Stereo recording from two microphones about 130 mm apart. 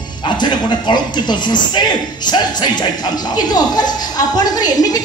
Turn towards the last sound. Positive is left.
turn(degrees=30)  # may be behind; listen again after turning